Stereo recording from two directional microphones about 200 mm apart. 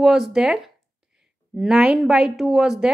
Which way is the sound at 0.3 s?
Centre (ahead or behind).